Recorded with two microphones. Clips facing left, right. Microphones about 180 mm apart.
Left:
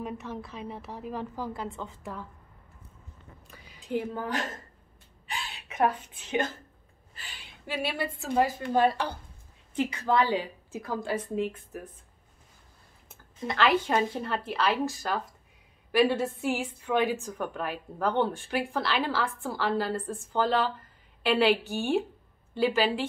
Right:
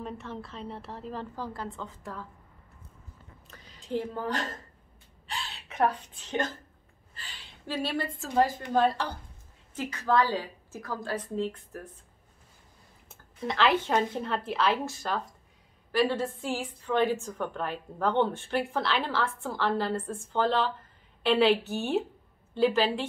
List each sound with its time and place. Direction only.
0.0 s a woman's voice: 15° left (ahead or behind)
3.4 s a woman's voice: 10° left (ahead or behind)
7.8 s a woman's voice: 10° left (ahead or behind)
13.5 s a woman's voice: 5° left (ahead or behind)